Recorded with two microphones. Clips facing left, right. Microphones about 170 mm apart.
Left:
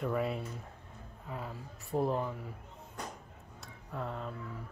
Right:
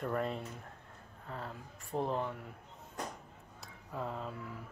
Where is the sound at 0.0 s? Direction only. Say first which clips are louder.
Left 2 dB; 5° left (ahead or behind).